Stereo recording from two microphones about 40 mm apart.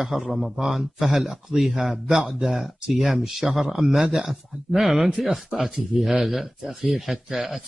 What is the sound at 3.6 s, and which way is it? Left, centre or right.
Speech, centre.